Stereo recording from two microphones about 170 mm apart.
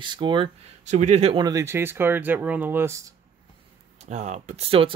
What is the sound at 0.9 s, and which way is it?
Speech, 40° right (ahead or behind).